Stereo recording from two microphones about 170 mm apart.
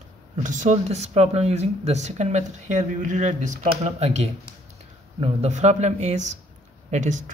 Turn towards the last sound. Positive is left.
turn(degrees=-45)  # may be behind; listen again after turning